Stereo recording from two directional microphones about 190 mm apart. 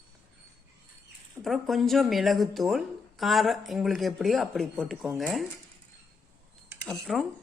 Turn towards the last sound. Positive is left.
turn(degrees=0)  # may be behind; listen again after turning